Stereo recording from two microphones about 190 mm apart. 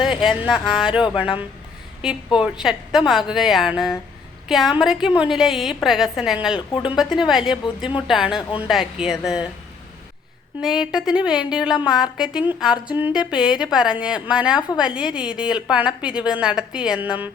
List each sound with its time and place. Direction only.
0.0 s a woman's voice: 5° right (ahead or behind)
2.0 s a woman's voice: 5° right (ahead or behind)
8.4 s a woman's voice: 25° left (ahead or behind)
8.6 s a woman's voice: centre (ahead or behind)
10.6 s a woman's voice: 5° right (ahead or behind)